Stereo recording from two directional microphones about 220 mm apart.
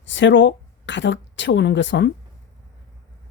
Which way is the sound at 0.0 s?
55° left (ahead or behind).